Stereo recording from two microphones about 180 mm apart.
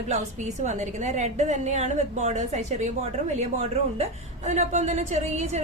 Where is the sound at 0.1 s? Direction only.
40° right (ahead or behind).